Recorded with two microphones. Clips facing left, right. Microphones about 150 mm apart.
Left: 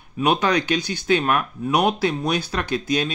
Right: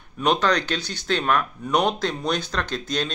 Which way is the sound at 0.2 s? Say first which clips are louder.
Left 1 dB; 10° left (ahead or behind).